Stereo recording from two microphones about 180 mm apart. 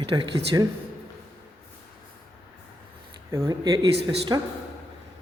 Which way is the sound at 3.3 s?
15° right (ahead or behind).